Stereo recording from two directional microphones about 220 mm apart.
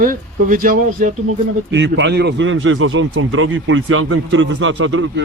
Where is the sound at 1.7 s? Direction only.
55° right (ahead or behind); by 5.2 s 70° right (ahead or behind).